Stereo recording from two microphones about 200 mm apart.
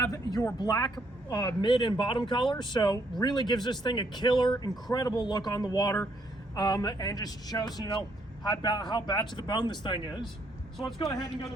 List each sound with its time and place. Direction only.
0.0 s speech: 20° left (ahead or behind)